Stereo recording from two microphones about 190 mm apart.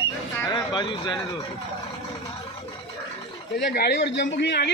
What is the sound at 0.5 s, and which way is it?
Speech, 25° left (ahead or behind).